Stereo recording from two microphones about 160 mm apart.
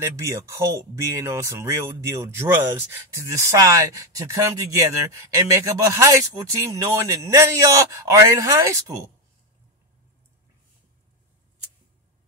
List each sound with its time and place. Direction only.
0.0 s speech: 20° right (ahead or behind)